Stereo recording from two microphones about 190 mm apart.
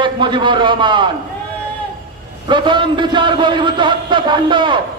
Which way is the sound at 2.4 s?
25° right (ahead or behind).